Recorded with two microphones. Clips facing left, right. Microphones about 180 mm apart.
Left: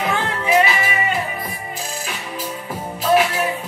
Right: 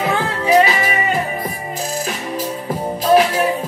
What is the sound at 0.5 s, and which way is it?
Music, 40° right (ahead or behind).